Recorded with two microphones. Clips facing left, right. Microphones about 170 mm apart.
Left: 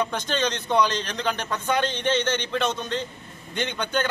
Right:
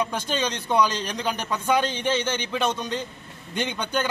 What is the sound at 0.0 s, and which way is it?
A man's voice, 10° right (ahead or behind).